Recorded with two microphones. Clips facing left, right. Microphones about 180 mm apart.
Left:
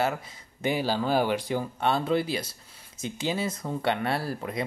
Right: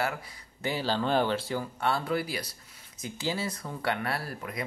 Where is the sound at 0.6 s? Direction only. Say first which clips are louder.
Left 3 dB; 15° left (ahead or behind).